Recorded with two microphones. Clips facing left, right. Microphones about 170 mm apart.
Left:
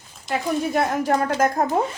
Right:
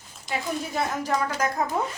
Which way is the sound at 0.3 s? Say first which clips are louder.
Left 6 dB; 50° left (ahead or behind).